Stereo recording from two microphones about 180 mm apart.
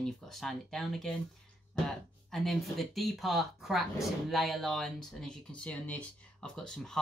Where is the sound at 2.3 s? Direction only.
Centre (ahead or behind).